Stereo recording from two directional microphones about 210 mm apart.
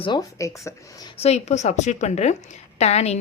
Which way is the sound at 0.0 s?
20° left (ahead or behind).